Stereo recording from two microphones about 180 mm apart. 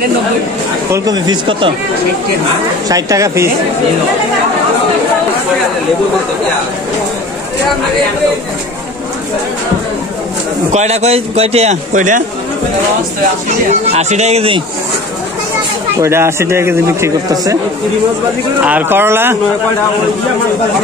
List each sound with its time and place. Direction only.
0.9 s speech: 20° right (ahead or behind)
2.9 s a man's voice: 15° right (ahead or behind)
10.7 s a man's voice: 40° right (ahead or behind)
13.9 s a man's voice: 40° right (ahead or behind)
16.0 s a man's voice: 15° right (ahead or behind)
18.6 s a man's voice: 10° right (ahead or behind)